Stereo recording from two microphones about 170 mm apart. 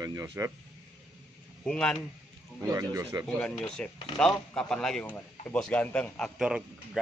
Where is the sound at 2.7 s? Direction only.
20° right (ahead or behind).